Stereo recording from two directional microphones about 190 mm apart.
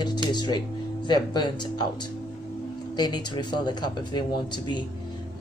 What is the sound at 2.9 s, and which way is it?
A woman's voice, 20° left (ahead or behind).